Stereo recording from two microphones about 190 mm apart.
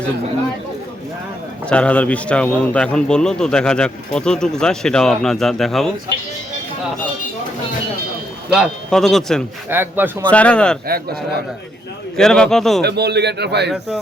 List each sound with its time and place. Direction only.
1.7 s a man's voice: 5° left (ahead or behind)
8.4 s a man's voice: centre (ahead or behind)
9.6 s speech: 10° right (ahead or behind)
10.2 s speech: 5° left (ahead or behind)
12.1 s a man's voice: 5° left (ahead or behind)
12.8 s a man's voice: 60° right (ahead or behind)